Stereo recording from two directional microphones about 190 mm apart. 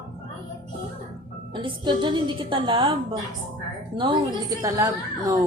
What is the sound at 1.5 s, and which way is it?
A woman's voice, 25° right (ahead or behind).